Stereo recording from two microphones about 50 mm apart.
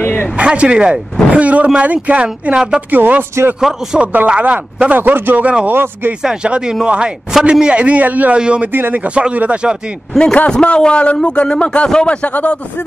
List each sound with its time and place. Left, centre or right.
0.0 s a sound: left
0.4 s a man's voice: right
2.2 s speech: centre
2.9 s a man's voice: right
3.7 s speech: centre
4.0 s a man's voice: right
4.9 s a man's voice: right
6.2 s speech: centre
7.6 s a man's voice: right
8.4 s a man's voice: right
8.7 s a man's voice: right
9.0 s a man's voice: right
10.1 s a man's voice: centre